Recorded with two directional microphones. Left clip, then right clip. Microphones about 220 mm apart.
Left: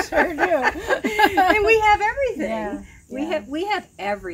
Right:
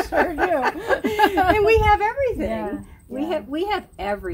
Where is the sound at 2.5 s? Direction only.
15° left (ahead or behind).